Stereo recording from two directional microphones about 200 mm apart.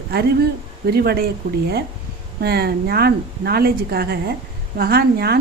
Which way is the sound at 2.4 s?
50° right (ahead or behind).